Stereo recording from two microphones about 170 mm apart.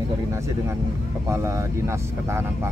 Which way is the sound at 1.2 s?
20° right (ahead or behind).